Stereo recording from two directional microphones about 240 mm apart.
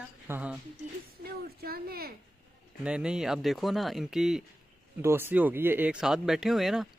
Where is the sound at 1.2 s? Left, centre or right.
Right.